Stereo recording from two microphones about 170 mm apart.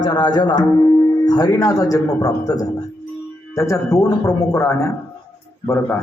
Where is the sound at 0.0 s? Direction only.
25° left (ahead or behind).